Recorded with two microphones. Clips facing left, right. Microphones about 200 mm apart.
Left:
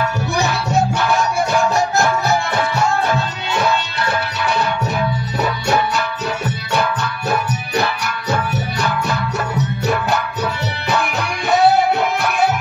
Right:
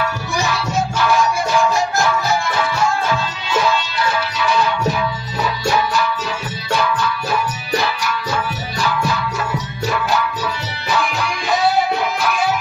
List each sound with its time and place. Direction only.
0.4 s music: 65° left (ahead or behind)
5.4 s music: 65° left (ahead or behind)
9.8 s music: 65° left (ahead or behind)